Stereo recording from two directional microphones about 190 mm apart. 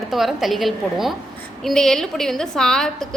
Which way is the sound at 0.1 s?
Centre (ahead or behind).